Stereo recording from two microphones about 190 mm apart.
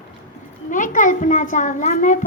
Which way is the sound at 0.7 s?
45° left (ahead or behind).